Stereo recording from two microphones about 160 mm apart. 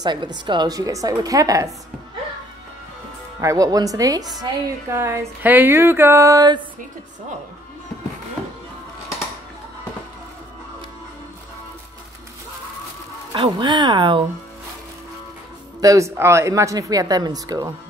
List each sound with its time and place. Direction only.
0.0 s speech: 30° right (ahead or behind)
3.3 s speech: 20° right (ahead or behind)
4.9 s a sound: 15° right (ahead or behind)
13.3 s speech: 30° right (ahead or behind)
15.8 s speech: 20° right (ahead or behind)